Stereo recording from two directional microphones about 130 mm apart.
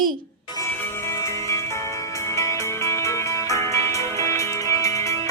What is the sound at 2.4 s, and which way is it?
Music, 20° left (ahead or behind).